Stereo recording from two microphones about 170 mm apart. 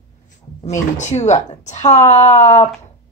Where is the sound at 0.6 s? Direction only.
45° left (ahead or behind).